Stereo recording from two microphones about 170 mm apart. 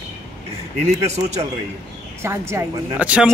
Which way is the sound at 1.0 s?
40° right (ahead or behind).